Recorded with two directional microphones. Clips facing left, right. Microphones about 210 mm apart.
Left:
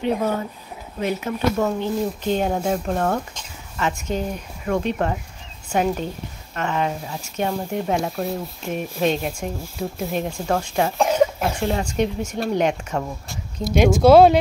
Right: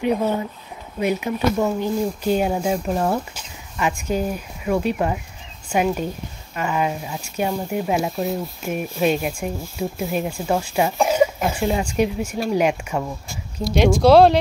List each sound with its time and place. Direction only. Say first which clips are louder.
0.0 s speech: right 1 dB; 10° right (ahead or behind)
13.7 s speech: left 1 dB; 5° left (ahead or behind)